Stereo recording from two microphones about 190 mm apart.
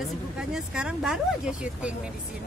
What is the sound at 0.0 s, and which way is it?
Speech, centre (ahead or behind).